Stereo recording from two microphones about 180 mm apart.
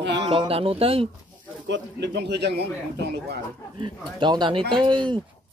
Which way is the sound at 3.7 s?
25° right (ahead or behind).